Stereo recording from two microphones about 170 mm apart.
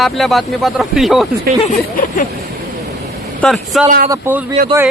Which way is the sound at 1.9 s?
60° left (ahead or behind).